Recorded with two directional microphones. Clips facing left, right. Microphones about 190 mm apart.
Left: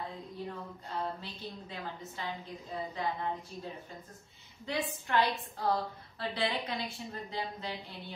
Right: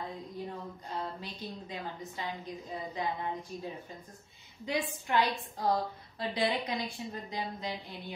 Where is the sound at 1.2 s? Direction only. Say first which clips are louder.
Right 2 dB; 15° right (ahead or behind).